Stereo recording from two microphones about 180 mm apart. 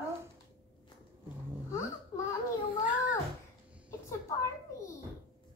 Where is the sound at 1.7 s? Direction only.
15° left (ahead or behind).